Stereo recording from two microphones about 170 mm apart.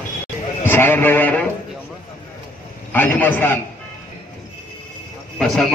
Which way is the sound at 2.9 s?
10° left (ahead or behind).